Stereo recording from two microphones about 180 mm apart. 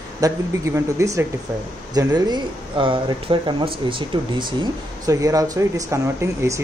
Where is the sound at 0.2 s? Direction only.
15° right (ahead or behind).